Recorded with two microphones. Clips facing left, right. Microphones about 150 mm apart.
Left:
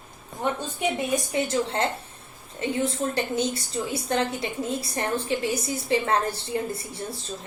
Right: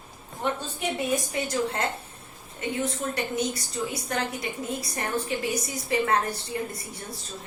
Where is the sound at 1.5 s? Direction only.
30° left (ahead or behind).